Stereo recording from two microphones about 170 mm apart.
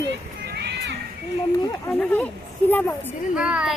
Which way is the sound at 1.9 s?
5° left (ahead or behind).